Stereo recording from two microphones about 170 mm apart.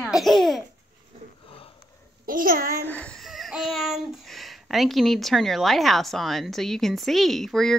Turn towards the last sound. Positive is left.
turn(degrees=0)  # may be behind; listen again after turning